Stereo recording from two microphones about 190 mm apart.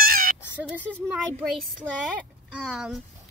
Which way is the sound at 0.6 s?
10° right (ahead or behind).